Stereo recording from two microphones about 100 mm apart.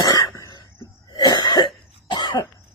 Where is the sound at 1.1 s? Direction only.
45° left (ahead or behind).